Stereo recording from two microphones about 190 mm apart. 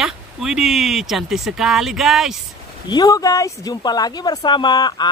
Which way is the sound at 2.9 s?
20° left (ahead or behind).